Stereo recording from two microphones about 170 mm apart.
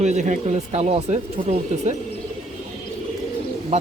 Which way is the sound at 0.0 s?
45° right (ahead or behind).